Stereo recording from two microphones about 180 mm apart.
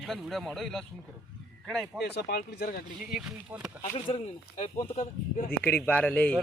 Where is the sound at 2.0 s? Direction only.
60° left (ahead or behind).